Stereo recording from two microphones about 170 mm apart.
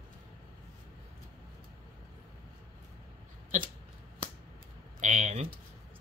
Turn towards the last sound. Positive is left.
turn(degrees=-45)  # may be behind; listen again after turning